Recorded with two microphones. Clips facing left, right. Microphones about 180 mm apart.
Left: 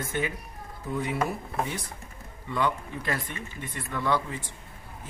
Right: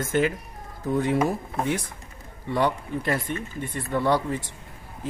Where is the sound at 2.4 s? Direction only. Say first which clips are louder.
Right 4 dB; 35° right (ahead or behind).